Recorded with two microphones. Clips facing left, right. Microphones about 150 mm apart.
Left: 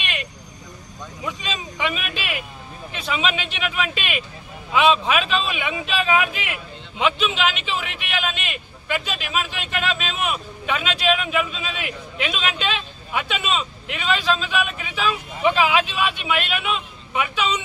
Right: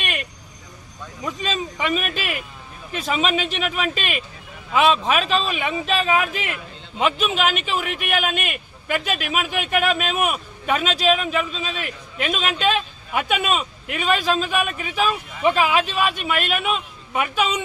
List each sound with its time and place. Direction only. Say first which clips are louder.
1.2 s a man's voice: right 4 dB; 40° right (ahead or behind)